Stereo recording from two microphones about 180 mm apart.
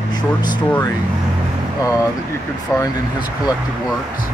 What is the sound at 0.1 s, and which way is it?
Speech, 25° left (ahead or behind).